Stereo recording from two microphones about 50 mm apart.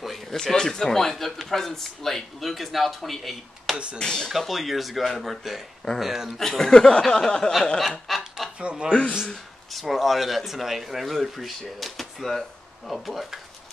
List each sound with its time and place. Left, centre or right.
0.0 s speech: centre
3.7 s speech: right
4.0 s speech: centre
4.3 s speech: centre
6.3 s speech: centre
8.1 s a sound: centre
8.5 s speech: right
9.7 s speech: centre